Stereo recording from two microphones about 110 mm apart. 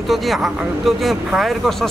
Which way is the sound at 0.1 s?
Centre (ahead or behind).